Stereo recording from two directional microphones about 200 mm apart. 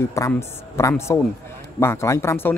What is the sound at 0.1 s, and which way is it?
Speech, 15° left (ahead or behind).